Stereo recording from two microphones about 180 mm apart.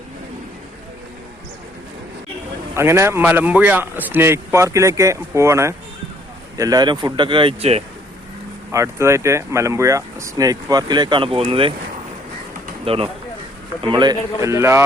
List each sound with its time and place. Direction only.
2.7 s a man's voice: 15° right (ahead or behind); by 7.9 s 35° right (ahead or behind)
8.7 s speech: 15° right (ahead or behind); by 11.7 s 30° right (ahead or behind)
12.8 s a man's voice: 30° right (ahead or behind); by 14.8 s 15° right (ahead or behind)